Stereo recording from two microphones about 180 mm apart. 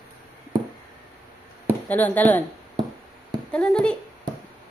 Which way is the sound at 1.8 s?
10° left (ahead or behind).